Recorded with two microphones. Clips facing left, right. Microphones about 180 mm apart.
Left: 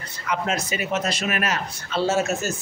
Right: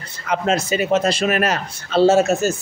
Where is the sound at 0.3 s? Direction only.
30° right (ahead or behind).